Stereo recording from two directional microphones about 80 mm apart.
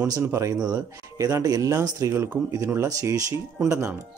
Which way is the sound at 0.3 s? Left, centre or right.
Right.